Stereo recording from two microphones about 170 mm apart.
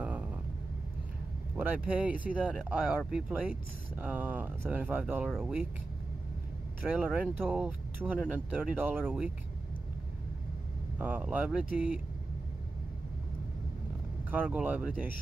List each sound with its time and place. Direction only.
1.6 s speech: 10° right (ahead or behind)
6.8 s speech: 5° right (ahead or behind)
11.0 s speech: 10° right (ahead or behind)
14.3 s speech: 10° right (ahead or behind)